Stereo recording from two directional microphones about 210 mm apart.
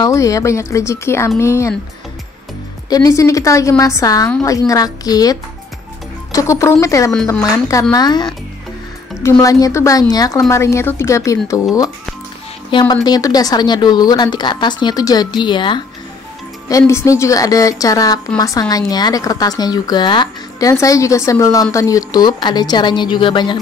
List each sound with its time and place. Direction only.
0.0 s speech: 15° left (ahead or behind)
2.9 s a woman's voice: 15° left (ahead or behind)
12.7 s a woman's voice: 20° left (ahead or behind)